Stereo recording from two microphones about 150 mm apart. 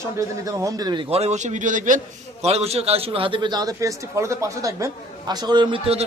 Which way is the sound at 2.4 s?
45° right (ahead or behind).